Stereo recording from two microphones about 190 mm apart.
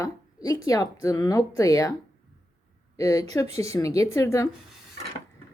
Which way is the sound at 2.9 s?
15° left (ahead or behind).